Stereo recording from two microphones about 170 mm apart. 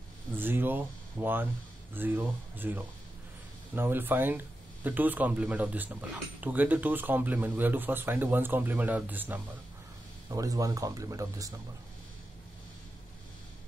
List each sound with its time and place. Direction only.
0.4 s speech: 10° right (ahead or behind)